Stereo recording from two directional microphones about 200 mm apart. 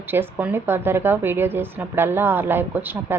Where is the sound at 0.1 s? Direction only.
10° right (ahead or behind).